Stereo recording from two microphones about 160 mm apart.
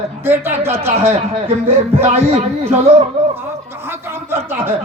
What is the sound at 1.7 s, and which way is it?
Speech, 40° right (ahead or behind).